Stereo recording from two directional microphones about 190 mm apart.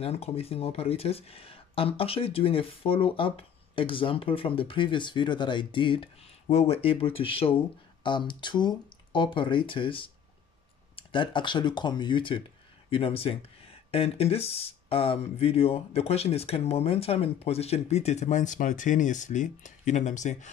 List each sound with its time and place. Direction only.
0.0 s speech: 30° left (ahead or behind)